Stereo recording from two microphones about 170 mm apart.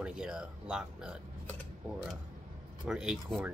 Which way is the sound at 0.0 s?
5° right (ahead or behind).